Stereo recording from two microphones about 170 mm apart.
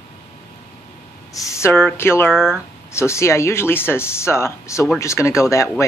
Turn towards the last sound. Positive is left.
turn(degrees=15)  # may be behind; listen again after turning